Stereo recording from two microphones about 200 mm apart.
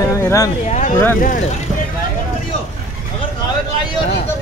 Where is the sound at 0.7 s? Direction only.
40° left (ahead or behind).